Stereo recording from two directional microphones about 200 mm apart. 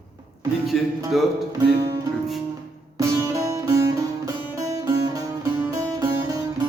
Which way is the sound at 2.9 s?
15° right (ahead or behind).